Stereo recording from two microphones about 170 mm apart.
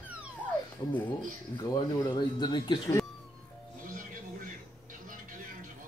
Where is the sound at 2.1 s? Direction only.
25° left (ahead or behind).